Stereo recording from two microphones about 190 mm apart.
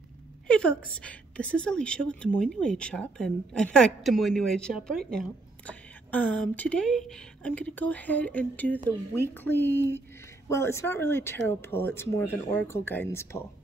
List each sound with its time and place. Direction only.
0.5 s a woman's voice: 5° left (ahead or behind)